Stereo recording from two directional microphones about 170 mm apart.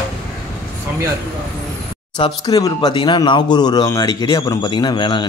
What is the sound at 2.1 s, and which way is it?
A man's voice, 25° left (ahead or behind).